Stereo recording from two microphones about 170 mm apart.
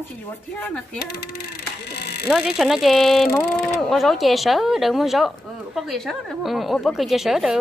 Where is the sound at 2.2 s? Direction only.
5° right (ahead or behind).